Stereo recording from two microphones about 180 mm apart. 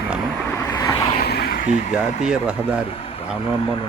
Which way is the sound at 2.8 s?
30° left (ahead or behind).